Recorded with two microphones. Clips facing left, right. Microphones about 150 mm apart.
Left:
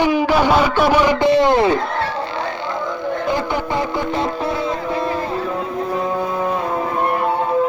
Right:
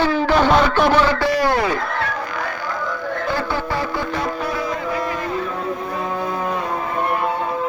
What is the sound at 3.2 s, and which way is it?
Music, 20° left (ahead or behind).